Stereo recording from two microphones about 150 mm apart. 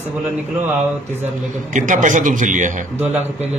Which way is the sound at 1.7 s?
55° right (ahead or behind).